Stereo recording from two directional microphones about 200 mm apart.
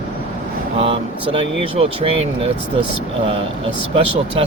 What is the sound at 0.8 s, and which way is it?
Speech, 25° right (ahead or behind).